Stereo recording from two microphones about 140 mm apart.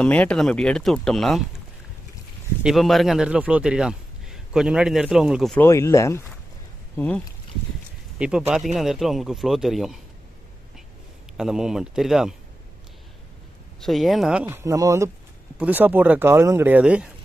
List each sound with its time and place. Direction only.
0.0 s speech: 10° left (ahead or behind)
2.6 s speech: centre (ahead or behind)
5.6 s speech: 20° left (ahead or behind)
8.2 s speech: 5° right (ahead or behind)
11.3 s speech: 5° right (ahead or behind)
13.7 s speech: centre (ahead or behind); by 15.0 s 25° right (ahead or behind)
15.5 s speech: 10° right (ahead or behind)